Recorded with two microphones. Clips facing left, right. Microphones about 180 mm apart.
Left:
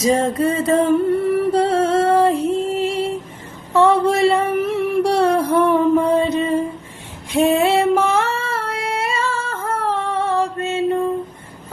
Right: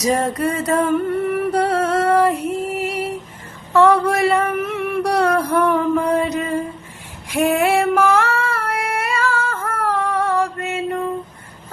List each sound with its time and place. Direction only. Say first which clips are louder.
0.0 s music: left 2 dB; 25° left (ahead or behind)
3.7 s a sound: even; 25° left (ahead or behind)
7.3 s female singing: left 2 dB; 25° left (ahead or behind)